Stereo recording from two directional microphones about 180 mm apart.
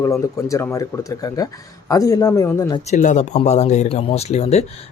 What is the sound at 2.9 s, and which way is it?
Speech, 40° left (ahead or behind).